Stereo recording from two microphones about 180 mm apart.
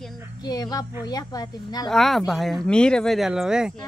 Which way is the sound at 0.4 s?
20° left (ahead or behind).